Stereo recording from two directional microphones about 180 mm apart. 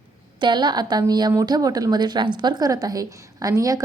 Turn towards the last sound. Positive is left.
turn(degrees=-20)  # may be behind; listen again after turning